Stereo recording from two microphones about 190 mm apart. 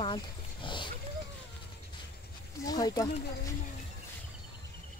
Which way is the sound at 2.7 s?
20° left (ahead or behind).